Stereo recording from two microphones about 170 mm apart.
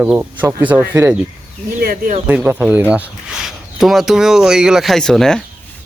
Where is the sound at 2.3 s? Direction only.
10° right (ahead or behind).